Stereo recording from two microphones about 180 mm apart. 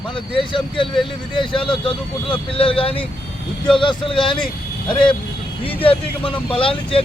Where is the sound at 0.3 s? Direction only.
30° left (ahead or behind).